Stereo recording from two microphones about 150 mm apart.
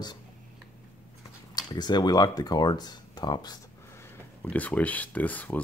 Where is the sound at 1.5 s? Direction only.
30° left (ahead or behind); by 5.6 s 10° left (ahead or behind).